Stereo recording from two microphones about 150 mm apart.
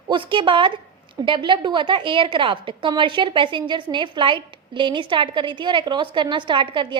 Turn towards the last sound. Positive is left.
turn(degrees=-35)  # may be behind; listen again after turning